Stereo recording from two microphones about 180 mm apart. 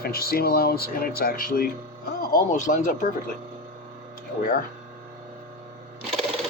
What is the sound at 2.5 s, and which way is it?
Speech, 40° left (ahead or behind).